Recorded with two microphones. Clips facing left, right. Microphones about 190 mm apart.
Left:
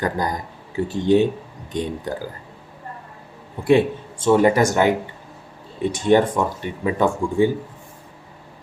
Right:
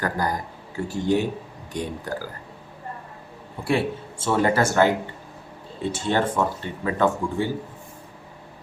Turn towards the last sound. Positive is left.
turn(degrees=15)  # may be behind; listen again after turning